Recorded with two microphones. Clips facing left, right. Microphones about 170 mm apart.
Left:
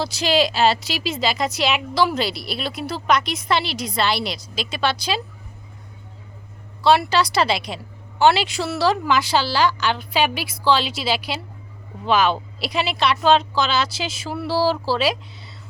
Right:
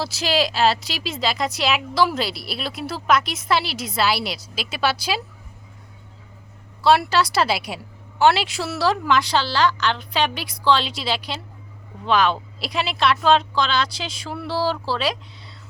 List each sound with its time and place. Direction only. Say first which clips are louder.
0.0 s a woman's voice: left 3 dB; centre (ahead or behind)
6.8 s a woman's voice: even; centre (ahead or behind)